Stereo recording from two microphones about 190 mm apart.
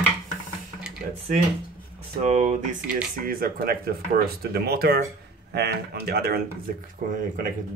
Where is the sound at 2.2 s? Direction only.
40° right (ahead or behind); by 6.4 s 55° right (ahead or behind).